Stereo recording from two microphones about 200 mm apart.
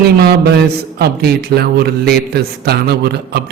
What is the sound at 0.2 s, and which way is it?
Speech, 50° right (ahead or behind).